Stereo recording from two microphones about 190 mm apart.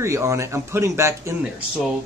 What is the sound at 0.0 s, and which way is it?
Speech, 15° right (ahead or behind).